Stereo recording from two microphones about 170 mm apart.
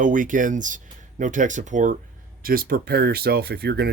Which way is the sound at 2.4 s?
60° right (ahead or behind).